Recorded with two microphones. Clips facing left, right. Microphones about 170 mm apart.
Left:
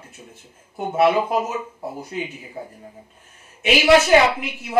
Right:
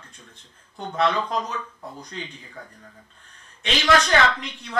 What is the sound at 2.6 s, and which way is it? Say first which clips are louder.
Speech: left 9 dB; 25° left (ahead or behind).